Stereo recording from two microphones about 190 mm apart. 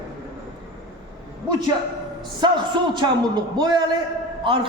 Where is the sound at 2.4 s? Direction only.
25° right (ahead or behind).